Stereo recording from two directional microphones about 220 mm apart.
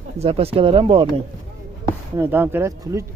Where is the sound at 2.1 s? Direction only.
10° right (ahead or behind).